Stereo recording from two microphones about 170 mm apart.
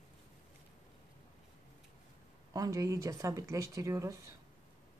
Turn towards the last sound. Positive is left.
turn(degrees=-20)  # may be behind; listen again after turning